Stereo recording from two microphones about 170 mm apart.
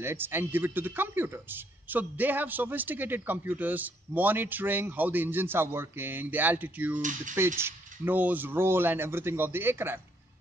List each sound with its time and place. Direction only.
0.0 s speech: 15° right (ahead or behind)
7.0 s mechanisms: 50° right (ahead or behind)
7.3 s speech: 15° right (ahead or behind)